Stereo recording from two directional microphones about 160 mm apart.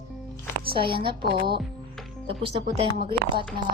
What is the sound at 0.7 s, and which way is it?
A woman's voice, 35° right (ahead or behind).